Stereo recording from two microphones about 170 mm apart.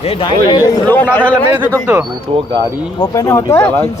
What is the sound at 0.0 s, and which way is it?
Speech, 30° left (ahead or behind).